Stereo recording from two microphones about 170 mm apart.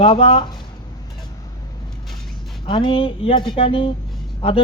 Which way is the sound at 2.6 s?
30° left (ahead or behind).